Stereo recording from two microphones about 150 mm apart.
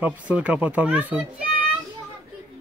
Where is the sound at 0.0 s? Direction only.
10° right (ahead or behind).